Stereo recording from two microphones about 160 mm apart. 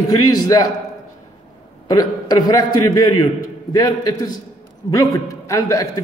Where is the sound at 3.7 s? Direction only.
25° left (ahead or behind).